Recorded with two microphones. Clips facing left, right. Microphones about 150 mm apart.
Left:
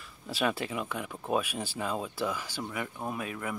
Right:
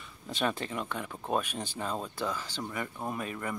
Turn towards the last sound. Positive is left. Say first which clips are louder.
# even
turn(degrees=5)  # may be behind; listen again after turning